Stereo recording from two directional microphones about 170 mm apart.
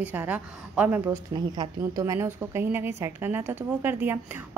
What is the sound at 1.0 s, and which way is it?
A woman's voice, 20° right (ahead or behind).